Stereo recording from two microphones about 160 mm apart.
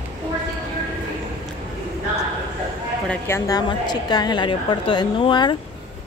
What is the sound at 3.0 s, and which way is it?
A woman's voice, 15° left (ahead or behind).